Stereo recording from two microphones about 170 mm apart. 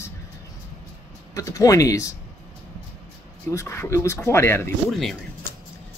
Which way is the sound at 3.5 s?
15° left (ahead or behind).